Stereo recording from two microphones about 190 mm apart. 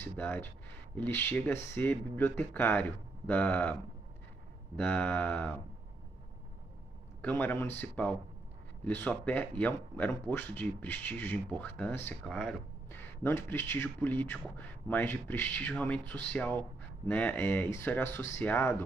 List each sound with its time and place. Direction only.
0.0 s a man's voice: 10° left (ahead or behind)
4.7 s a man's voice: 10° left (ahead or behind)
7.2 s a man's voice: 10° left (ahead or behind)